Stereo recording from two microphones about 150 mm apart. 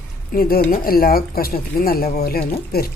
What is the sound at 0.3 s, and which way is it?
Speech, 80° left.